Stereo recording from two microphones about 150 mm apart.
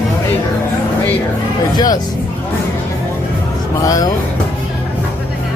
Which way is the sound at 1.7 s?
25° left (ahead or behind).